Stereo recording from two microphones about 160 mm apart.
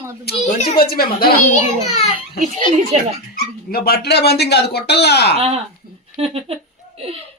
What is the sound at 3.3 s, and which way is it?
Speech, 70° left (ahead or behind).